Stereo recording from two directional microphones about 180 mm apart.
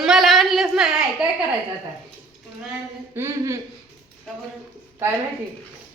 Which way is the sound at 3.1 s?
15° right (ahead or behind).